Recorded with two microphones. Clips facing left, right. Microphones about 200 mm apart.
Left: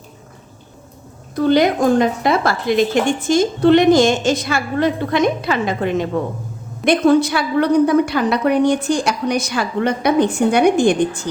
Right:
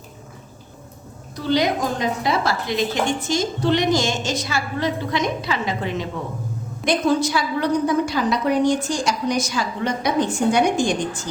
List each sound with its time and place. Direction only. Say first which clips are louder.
1.4 s a woman's voice: left 6 dB; 55° left (ahead or behind)